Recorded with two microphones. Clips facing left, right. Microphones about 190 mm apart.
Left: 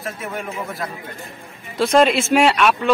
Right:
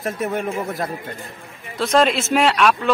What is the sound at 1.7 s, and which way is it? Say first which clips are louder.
Speech: left 2 dB; centre (ahead or behind).